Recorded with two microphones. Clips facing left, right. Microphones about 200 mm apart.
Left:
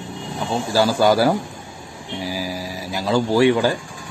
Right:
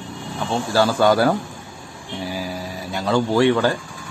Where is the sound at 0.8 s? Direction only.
10° left (ahead or behind).